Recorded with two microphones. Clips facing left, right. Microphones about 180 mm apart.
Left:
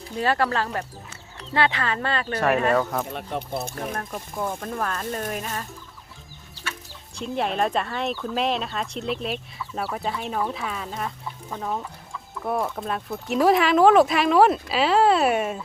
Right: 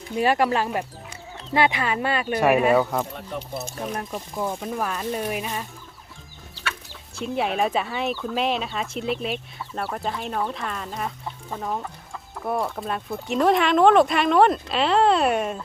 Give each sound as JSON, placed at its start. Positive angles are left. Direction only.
{"t": 0.2, "sound": "speech", "side_deg": -15}
{"t": 3.1, "sound": "speech", "side_deg": 70}
{"t": 4.1, "sound": "speech", "side_deg": 0}
{"t": 7.2, "sound": "speech", "side_deg": -5}